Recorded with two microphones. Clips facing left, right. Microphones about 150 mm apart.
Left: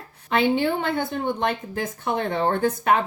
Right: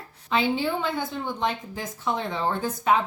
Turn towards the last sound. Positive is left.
turn(degrees=60)  # may be behind; listen again after turning